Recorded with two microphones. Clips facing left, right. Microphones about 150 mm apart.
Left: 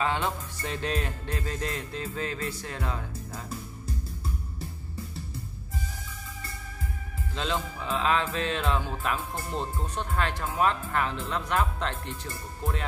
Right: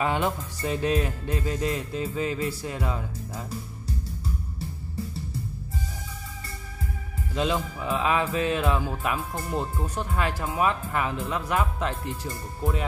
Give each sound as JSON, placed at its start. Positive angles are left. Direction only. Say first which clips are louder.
{"t": 0.0, "sound": "speech", "louder": "right 3 dB", "side_deg": -10}
{"t": 7.3, "sound": "speech", "louder": "right 5 dB", "side_deg": -10}